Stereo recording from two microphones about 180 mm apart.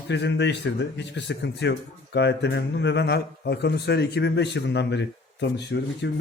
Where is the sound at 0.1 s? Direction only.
75° left (ahead or behind).